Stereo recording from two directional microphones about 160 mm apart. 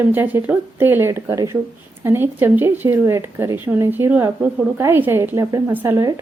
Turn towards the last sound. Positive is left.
turn(degrees=-15)  # may be behind; listen again after turning